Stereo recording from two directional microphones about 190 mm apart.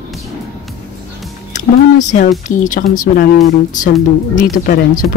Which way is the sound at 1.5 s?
40° left (ahead or behind).